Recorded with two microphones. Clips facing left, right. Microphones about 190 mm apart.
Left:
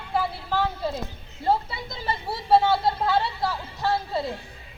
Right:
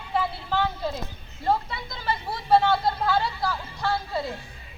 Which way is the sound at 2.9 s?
25° left (ahead or behind).